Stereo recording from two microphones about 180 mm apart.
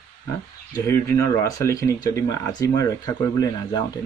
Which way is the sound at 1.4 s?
20° left (ahead or behind).